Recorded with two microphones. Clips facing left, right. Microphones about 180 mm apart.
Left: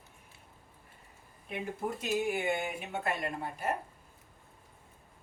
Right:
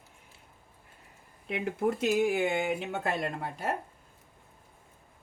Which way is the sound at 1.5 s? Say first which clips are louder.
Right 7 dB; 80° right.